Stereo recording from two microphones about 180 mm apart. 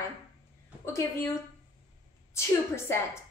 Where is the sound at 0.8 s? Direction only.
15° left (ahead or behind).